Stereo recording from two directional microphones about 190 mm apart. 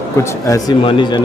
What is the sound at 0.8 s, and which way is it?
Speech, 25° left (ahead or behind).